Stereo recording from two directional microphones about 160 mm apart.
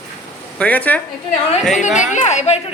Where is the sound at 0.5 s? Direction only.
10° left (ahead or behind).